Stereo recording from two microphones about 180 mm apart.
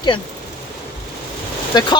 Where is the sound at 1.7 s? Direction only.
25° left (ahead or behind).